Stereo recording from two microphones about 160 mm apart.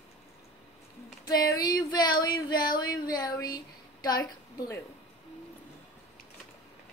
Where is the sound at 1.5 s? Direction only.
25° left (ahead or behind).